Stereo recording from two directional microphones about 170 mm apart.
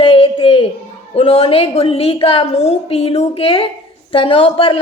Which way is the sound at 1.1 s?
35° left (ahead or behind).